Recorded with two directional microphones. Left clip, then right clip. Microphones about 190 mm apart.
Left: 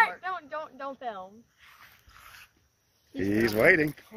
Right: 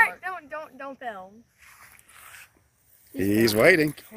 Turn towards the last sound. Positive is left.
turn(degrees=-35)  # may be behind; listen again after turning